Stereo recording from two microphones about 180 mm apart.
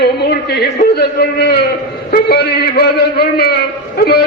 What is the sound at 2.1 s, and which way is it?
A man's voice, 60° left (ahead or behind).